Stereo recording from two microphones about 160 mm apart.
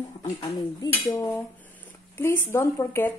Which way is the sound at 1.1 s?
10° left (ahead or behind).